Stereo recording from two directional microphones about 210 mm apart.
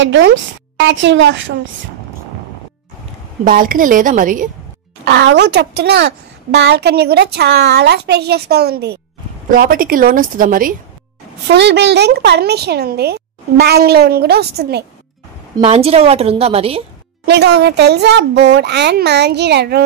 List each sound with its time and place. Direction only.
0.0 s a woman's voice: 60° right (ahead or behind)
3.4 s a woman's voice: 40° right (ahead or behind)
5.0 s a woman's voice: 55° right (ahead or behind)
11.5 s a woman's voice: 55° right (ahead or behind)
15.5 s a woman's voice: 30° right (ahead or behind)
17.3 s a woman's voice: 50° right (ahead or behind)